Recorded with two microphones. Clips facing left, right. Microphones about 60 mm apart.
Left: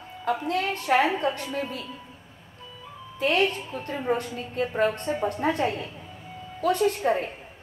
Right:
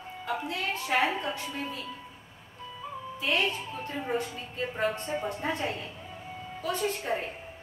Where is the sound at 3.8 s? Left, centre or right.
Left.